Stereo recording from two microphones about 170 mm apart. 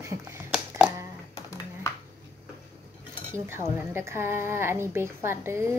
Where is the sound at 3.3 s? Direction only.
15° right (ahead or behind).